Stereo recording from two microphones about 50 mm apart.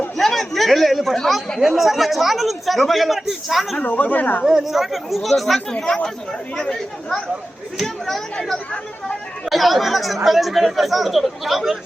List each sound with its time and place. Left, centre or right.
0.2 s a man's voice: centre
3.8 s speech: left
4.4 s speech: centre
5.7 s speech: centre
7.8 s speech: centre
9.5 s speech: centre